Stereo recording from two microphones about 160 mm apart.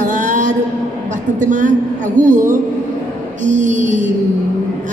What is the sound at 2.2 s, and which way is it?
A man's voice, 55° right (ahead or behind).